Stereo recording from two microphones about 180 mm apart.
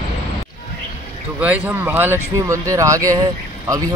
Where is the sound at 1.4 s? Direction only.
10° right (ahead or behind).